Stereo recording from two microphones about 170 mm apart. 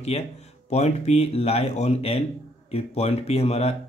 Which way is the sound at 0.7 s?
40° left (ahead or behind).